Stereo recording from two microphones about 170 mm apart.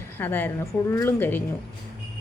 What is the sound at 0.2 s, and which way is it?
Speech, 10° left (ahead or behind).